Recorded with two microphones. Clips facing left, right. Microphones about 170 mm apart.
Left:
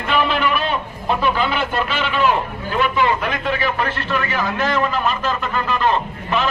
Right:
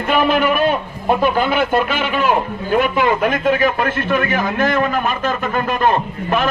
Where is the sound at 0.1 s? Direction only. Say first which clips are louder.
Right 4 dB; 45° right (ahead or behind).